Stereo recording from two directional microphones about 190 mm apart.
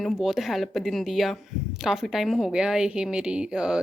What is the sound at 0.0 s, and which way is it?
A woman's voice, centre (ahead or behind).